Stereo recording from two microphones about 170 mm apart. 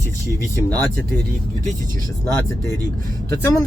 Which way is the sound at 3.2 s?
15° left (ahead or behind).